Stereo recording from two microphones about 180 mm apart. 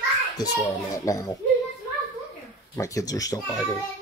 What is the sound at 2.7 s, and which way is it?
Speech, 15° left (ahead or behind).